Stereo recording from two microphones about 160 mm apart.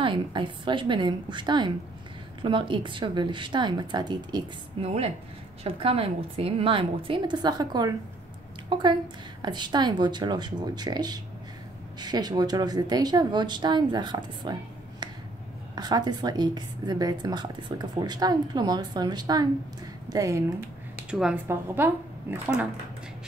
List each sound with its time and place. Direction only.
0.0 s a woman's voice: 30° right (ahead or behind)
4.8 s a woman's voice: 40° right (ahead or behind); by 20.4 s 20° right (ahead or behind)
21.1 s a woman's voice: 5° right (ahead or behind)